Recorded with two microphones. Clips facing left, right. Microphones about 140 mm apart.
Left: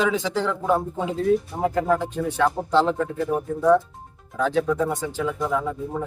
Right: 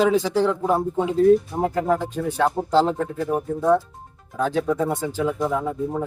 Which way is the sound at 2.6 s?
35° right (ahead or behind).